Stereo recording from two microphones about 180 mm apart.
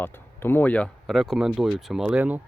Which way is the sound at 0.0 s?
10° left (ahead or behind).